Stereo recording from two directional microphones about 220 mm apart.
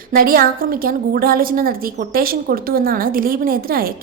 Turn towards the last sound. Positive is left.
turn(degrees=-40)  # may be behind; listen again after turning